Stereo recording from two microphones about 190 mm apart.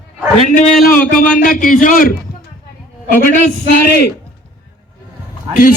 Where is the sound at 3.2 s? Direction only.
50° left (ahead or behind).